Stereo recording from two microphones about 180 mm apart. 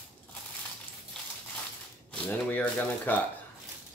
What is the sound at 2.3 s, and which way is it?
Typewriter, 10° left (ahead or behind).